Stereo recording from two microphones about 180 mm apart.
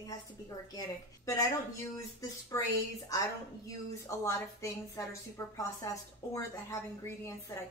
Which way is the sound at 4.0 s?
15° left (ahead or behind).